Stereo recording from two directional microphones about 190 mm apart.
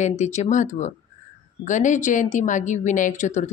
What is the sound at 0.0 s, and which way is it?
Speech, 40° left (ahead or behind).